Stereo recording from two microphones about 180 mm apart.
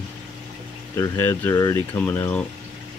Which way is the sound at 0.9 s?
15° left (ahead or behind).